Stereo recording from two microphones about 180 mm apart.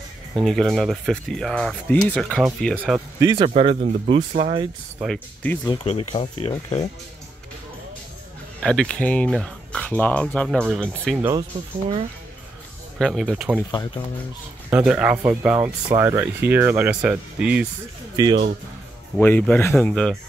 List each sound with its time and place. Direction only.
0.4 s speech: centre (ahead or behind)
3.2 s speech: 25° right (ahead or behind)
5.0 s speech: 5° left (ahead or behind)
5.7 s speech: 30° left (ahead or behind)
8.5 s speech: 5° left (ahead or behind)
13.0 s speech: centre (ahead or behind)
13.7 s speech: 25° left (ahead or behind)
14.7 s speech: 10° right (ahead or behind)
18.1 s speech: 20° right (ahead or behind)
19.1 s speech: 10° left (ahead or behind)